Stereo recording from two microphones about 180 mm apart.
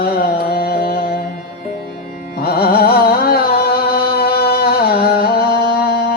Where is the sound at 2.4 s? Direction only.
60° left (ahead or behind).